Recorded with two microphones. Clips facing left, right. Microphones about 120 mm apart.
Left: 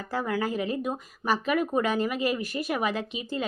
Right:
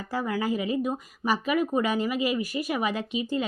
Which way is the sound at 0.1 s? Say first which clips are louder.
Right 1 dB; 10° right (ahead or behind).